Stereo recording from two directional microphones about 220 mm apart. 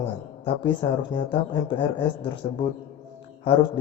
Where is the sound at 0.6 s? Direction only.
20° left (ahead or behind).